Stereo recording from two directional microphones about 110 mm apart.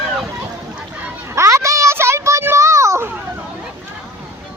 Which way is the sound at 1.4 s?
25° right (ahead or behind).